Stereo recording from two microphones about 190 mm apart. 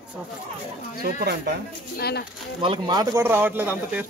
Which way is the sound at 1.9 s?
60° left (ahead or behind).